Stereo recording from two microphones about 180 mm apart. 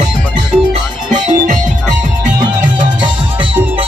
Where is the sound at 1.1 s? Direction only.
45° right (ahead or behind).